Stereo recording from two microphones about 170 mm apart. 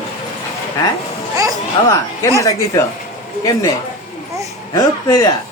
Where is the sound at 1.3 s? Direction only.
20° right (ahead or behind).